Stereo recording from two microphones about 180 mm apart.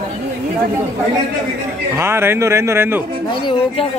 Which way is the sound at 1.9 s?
15° right (ahead or behind).